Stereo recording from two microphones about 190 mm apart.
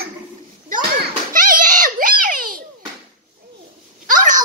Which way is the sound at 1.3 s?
45° right (ahead or behind).